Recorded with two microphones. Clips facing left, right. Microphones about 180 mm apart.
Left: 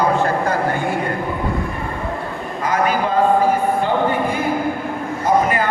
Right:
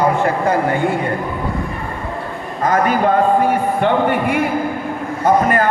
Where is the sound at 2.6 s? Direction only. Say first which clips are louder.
Right 3 dB; 50° right (ahead or behind).